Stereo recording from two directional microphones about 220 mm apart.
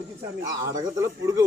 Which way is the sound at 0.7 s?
15° right (ahead or behind).